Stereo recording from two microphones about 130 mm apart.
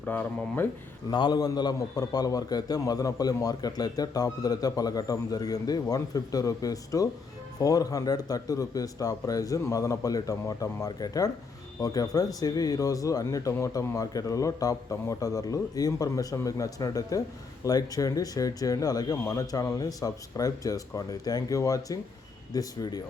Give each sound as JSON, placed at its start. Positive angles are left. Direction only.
{"t": 0.0, "sound": "speech", "side_deg": 15}
{"t": 1.1, "sound": "speech", "side_deg": 35}